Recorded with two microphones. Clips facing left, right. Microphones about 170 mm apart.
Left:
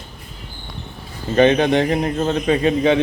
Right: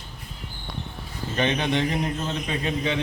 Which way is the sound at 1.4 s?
55° left (ahead or behind).